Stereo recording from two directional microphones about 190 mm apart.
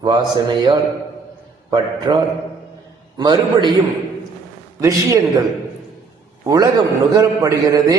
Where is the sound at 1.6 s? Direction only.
25° right (ahead or behind).